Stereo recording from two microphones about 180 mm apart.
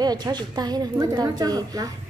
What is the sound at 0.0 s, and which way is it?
A woman's voice, 20° right (ahead or behind).